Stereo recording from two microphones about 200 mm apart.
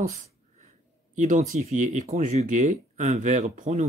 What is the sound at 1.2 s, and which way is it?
Speech, 35° right (ahead or behind).